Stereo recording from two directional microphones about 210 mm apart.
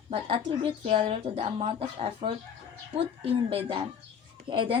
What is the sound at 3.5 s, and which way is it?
Speech, 25° right (ahead or behind).